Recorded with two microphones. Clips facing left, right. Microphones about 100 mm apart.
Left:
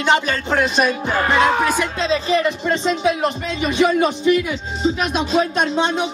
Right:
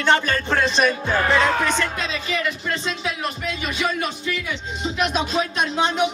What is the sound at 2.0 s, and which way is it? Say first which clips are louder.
A man's voice: left 8 dB; 30° left (ahead or behind).